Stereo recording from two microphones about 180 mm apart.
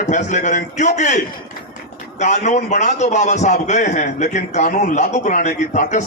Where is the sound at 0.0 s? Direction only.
40° left (ahead or behind).